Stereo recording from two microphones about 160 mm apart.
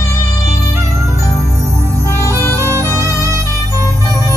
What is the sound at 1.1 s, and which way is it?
Music, 20° left (ahead or behind).